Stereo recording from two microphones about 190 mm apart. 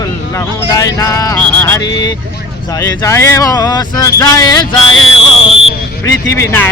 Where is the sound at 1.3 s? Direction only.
15° left (ahead or behind).